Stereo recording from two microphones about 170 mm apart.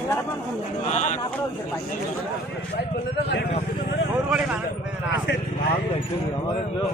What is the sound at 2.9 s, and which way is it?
Speech, 70° left (ahead or behind).